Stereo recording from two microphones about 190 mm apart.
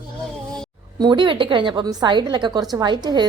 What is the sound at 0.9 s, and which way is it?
A woman's voice, 25° right (ahead or behind).